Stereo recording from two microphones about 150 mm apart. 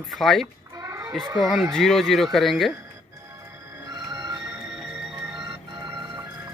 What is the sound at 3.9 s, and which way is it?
Music, 25° right (ahead or behind).